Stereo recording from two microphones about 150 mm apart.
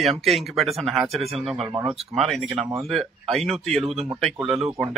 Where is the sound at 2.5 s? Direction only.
20° right (ahead or behind).